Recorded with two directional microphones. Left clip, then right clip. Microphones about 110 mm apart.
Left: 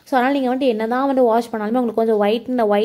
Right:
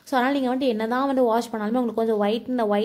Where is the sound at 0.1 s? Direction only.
25° left (ahead or behind).